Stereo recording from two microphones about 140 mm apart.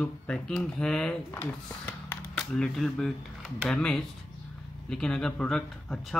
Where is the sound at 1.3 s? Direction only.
15° left (ahead or behind).